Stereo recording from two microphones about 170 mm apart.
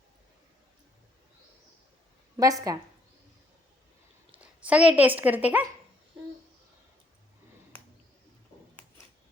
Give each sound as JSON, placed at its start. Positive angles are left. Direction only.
{"t": 2.4, "sound": "a woman's voice", "side_deg": -20}
{"t": 4.3, "sound": "speech", "side_deg": -10}